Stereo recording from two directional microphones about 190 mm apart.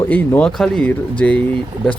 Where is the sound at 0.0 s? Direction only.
10° left (ahead or behind).